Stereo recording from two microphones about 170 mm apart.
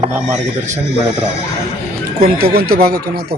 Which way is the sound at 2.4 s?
65° right (ahead or behind).